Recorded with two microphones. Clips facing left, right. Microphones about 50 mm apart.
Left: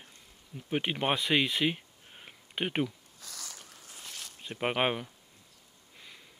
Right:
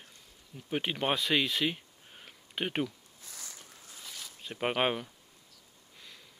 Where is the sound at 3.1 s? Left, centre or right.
Left.